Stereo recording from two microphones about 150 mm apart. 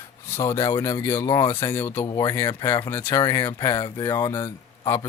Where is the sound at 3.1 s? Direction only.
30° left (ahead or behind).